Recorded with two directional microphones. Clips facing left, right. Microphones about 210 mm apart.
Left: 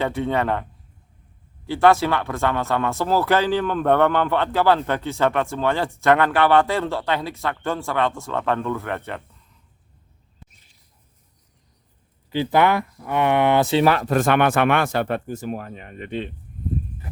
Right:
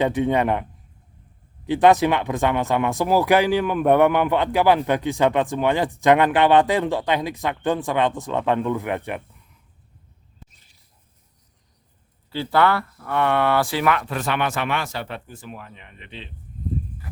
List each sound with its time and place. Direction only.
0.0 s speech: 15° right (ahead or behind)
1.6 s speech: 20° right (ahead or behind)
12.3 s speech: 15° left (ahead or behind); by 16.3 s 50° left (ahead or behind)